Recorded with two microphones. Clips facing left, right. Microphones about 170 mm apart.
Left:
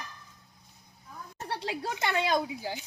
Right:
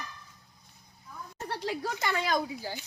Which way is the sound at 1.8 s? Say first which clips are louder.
Left 5 dB; 25° left (ahead or behind).